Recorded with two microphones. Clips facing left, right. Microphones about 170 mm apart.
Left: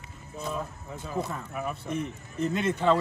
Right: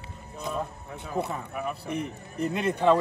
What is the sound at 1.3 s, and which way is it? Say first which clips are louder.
Speech: right 1 dB; centre (ahead or behind).